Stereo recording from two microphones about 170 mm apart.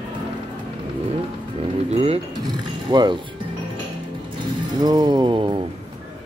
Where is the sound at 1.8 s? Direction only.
35° right (ahead or behind).